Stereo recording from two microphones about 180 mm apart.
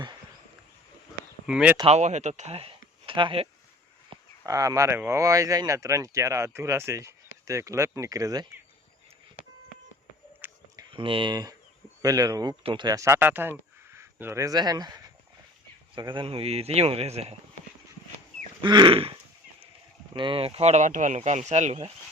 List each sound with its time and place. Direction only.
1.5 s speech: 5° right (ahead or behind)
1.8 s speech: 40° right (ahead or behind)
3.1 s throat clearing: 30° right (ahead or behind)
4.1 s speech: 20° right (ahead or behind)
10.4 s a sound: 10° right (ahead or behind)
10.8 s speech: 30° right (ahead or behind)
18.6 s throat clearing: 25° right (ahead or behind)
20.1 s speech: 30° right (ahead or behind)